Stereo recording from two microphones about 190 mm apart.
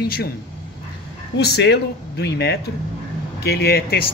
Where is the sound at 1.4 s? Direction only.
60° left (ahead or behind).